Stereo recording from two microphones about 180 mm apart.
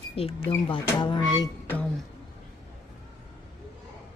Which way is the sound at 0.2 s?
30° left (ahead or behind).